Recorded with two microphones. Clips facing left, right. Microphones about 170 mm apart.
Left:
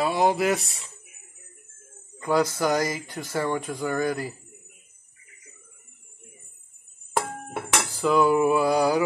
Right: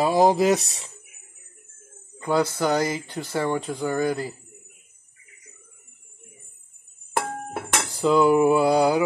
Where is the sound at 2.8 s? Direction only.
30° right (ahead or behind).